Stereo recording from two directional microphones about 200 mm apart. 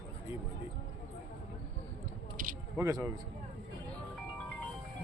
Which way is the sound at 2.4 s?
40° right (ahead or behind).